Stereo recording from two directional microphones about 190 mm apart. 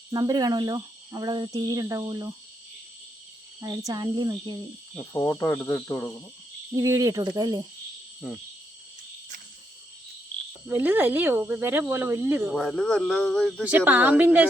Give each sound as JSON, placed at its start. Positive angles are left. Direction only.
{"t": 0.1, "sound": "speech", "side_deg": -20}
{"t": 3.6, "sound": "speech", "side_deg": -20}
{"t": 5.1, "sound": "cricket", "side_deg": 15}
{"t": 6.7, "sound": "speech", "side_deg": -15}
{"t": 8.2, "sound": "speech", "side_deg": 0}
{"t": 10.7, "sound": "speech", "side_deg": -10}
{"t": 12.5, "sound": "speech", "side_deg": 5}
{"t": 13.7, "sound": "speech", "side_deg": -10}